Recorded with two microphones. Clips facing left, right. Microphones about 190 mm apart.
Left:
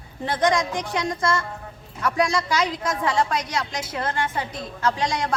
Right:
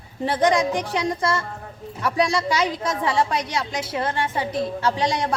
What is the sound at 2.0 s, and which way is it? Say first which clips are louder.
A woman's voice: right 1 dB; 30° right (ahead or behind).